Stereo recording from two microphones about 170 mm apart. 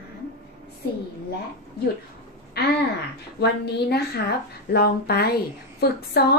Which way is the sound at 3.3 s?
75° left (ahead or behind).